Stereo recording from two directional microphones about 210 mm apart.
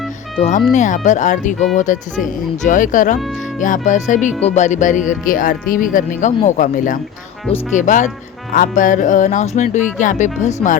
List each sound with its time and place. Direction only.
0.3 s speech: 30° left (ahead or behind)